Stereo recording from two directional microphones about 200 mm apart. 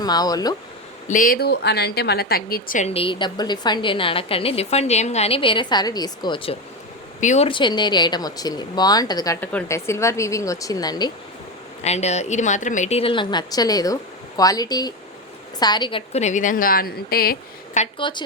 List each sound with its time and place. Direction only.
0.0 s a woman's voice: 20° left (ahead or behind)
1.0 s a woman's voice: 40° left (ahead or behind); by 11.1 s 20° left (ahead or behind)
11.8 s a woman's voice: 35° left (ahead or behind); by 17.3 s 50° left (ahead or behind)
17.7 s a woman's voice: 25° left (ahead or behind)